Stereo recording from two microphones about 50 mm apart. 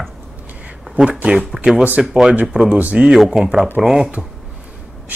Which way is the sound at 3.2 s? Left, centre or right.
Centre.